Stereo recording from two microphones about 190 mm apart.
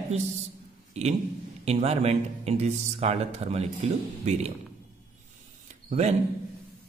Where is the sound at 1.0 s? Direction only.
35° right (ahead or behind).